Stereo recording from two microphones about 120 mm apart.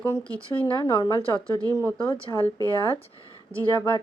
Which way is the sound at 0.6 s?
40° left (ahead or behind).